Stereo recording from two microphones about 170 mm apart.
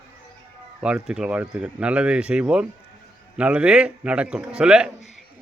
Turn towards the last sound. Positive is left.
turn(degrees=-5)  # may be behind; listen again after turning